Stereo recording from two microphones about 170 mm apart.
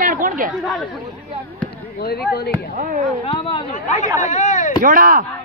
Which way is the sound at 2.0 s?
65° left (ahead or behind).